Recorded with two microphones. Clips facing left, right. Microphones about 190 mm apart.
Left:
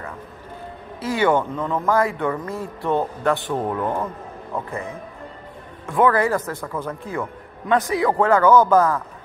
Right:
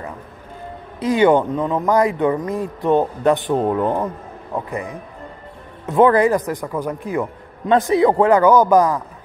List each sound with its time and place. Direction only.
0.9 s speech: 20° right (ahead or behind)